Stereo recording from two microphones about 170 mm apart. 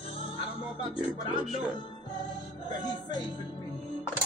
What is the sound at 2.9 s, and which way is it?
Speech, 25° left (ahead or behind).